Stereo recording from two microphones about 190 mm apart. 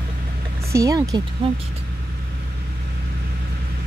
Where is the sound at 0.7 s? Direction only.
20° right (ahead or behind).